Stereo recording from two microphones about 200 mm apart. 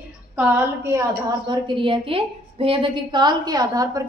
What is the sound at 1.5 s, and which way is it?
A woman's voice, 25° right (ahead or behind).